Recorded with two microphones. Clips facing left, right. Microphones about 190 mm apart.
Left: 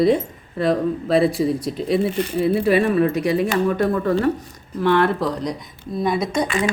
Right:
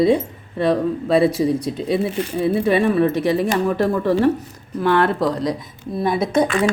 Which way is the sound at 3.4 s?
Centre (ahead or behind).